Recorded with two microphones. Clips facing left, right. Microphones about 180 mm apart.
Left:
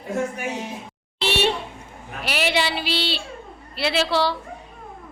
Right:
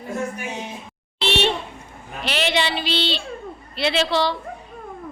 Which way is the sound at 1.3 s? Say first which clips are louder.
Even; 10° left (ahead or behind).